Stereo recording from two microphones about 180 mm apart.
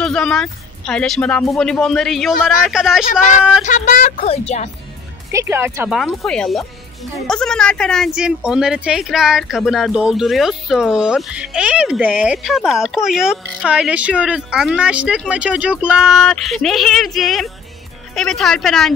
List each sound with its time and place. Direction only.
0.0 s speech: 5° left (ahead or behind)
3.6 s speech: 45° left (ahead or behind)
5.3 s speech: 15° right (ahead or behind)
5.9 s speech: centre (ahead or behind)